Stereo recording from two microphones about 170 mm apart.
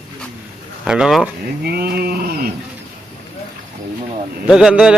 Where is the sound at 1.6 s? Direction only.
70° right (ahead or behind).